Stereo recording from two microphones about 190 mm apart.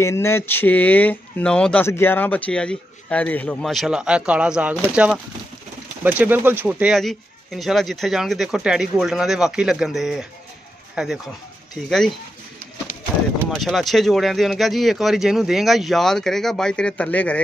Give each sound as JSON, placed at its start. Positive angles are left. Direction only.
{"t": 0.0, "sound": "speech", "side_deg": 15}
{"t": 13.5, "sound": "speech", "side_deg": 0}